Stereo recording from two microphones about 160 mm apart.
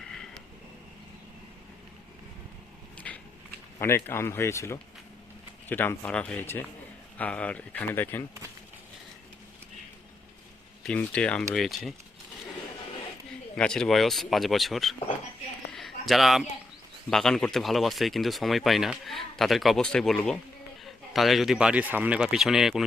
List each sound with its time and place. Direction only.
3.1 s a sound: 5° left (ahead or behind)
3.8 s speech: 15° left (ahead or behind)
10.8 s speech: 5° left (ahead or behind)
13.6 s speech: 5° left (ahead or behind)
15.7 s a sound: centre (ahead or behind)
17.1 s speech: 5° left (ahead or behind)